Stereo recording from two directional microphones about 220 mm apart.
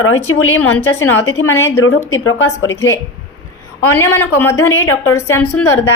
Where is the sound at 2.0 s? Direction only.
65° left (ahead or behind).